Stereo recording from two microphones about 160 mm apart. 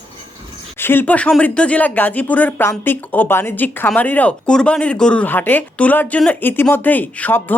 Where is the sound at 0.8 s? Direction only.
15° left (ahead or behind).